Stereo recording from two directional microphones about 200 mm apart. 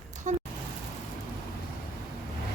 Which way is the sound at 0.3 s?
35° right (ahead or behind).